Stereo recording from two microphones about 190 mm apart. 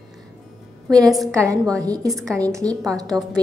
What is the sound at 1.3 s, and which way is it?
A woman's voice, 15° right (ahead or behind).